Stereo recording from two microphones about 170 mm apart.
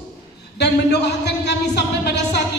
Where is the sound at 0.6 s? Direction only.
80° left.